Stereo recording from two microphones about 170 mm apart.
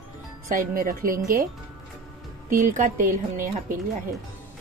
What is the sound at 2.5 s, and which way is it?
Speech, 50° right (ahead or behind).